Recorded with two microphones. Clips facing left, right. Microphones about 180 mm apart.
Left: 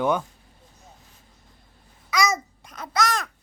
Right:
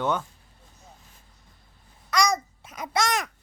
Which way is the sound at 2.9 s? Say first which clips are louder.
Left 1 dB; 20° right (ahead or behind).